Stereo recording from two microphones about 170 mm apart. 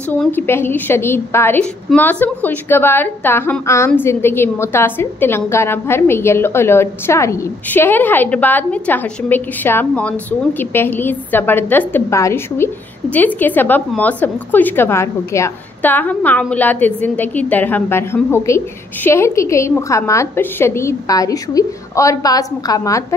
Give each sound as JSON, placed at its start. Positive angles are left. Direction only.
{"t": 0.1, "sound": "a woman's voice", "side_deg": 10}